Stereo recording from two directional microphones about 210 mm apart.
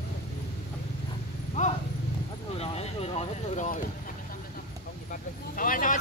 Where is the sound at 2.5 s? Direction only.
30° left (ahead or behind).